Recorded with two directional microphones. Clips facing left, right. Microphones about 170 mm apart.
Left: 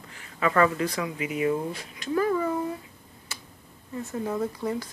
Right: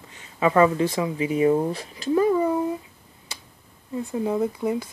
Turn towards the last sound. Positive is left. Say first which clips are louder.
# right 5 dB
turn(degrees=-15)  # may be behind; listen again after turning